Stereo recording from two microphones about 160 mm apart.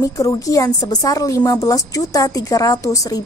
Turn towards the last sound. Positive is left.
turn(degrees=20)  # may be behind; listen again after turning